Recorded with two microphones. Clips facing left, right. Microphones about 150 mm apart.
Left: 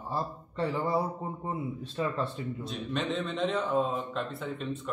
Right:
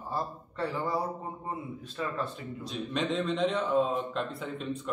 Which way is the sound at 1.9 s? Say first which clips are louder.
Left 2 dB; 30° left (ahead or behind).